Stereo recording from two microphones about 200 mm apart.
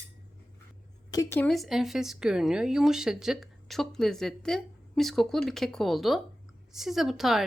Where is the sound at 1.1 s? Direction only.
20° left (ahead or behind).